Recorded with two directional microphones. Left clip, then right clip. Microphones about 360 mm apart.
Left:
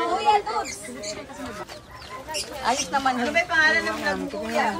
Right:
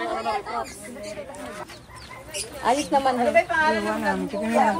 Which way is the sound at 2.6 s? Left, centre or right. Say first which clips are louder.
Right 3 dB; centre.